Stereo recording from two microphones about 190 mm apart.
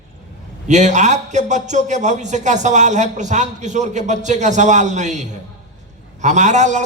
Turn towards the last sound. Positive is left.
turn(degrees=-40)  # may be behind; listen again after turning